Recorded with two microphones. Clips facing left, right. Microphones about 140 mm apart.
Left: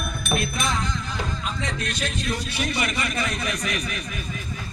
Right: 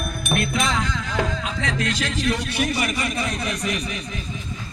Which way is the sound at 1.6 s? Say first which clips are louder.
Right 7 dB; 90° right.